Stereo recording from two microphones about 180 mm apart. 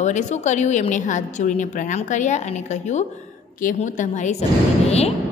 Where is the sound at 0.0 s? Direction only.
40° left (ahead or behind).